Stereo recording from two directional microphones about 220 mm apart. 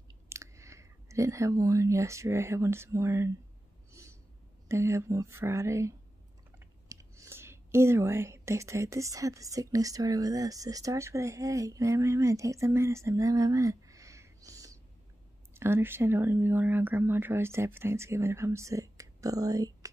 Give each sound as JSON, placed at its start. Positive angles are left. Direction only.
{"t": 0.3, "sound": "speech", "side_deg": -15}
{"t": 4.0, "sound": "owl", "side_deg": -15}
{"t": 4.6, "sound": "speech", "side_deg": -10}